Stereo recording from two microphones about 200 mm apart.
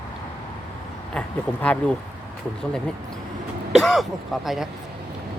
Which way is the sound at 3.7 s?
Centre (ahead or behind).